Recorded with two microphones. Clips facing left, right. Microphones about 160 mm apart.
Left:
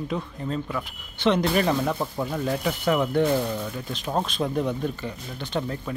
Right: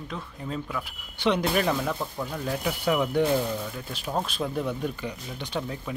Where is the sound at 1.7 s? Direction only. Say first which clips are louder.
Left 3 dB; 15° left (ahead or behind).